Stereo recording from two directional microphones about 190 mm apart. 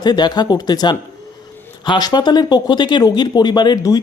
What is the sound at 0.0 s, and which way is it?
Speech, 20° left (ahead or behind).